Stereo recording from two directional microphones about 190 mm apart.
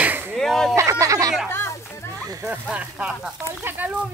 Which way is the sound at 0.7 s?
15° right (ahead or behind).